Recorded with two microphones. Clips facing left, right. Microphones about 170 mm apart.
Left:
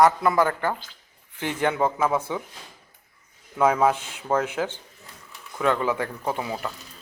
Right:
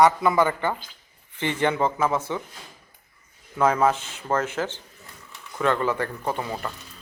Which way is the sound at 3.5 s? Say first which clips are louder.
Even; 5° left (ahead or behind).